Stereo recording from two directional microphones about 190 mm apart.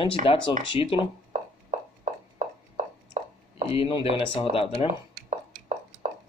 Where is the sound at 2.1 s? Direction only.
45° right (ahead or behind).